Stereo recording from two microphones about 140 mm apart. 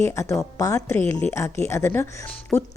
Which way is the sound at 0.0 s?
20° left (ahead or behind).